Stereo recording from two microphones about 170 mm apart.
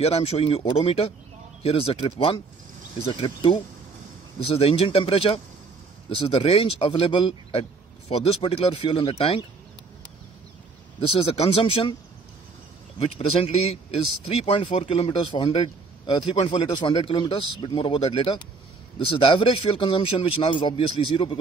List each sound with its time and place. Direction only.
0.0 s a man's voice: 35° left (ahead or behind)
11.0 s speech: 35° left (ahead or behind)
13.4 s a man's voice: 35° left (ahead or behind)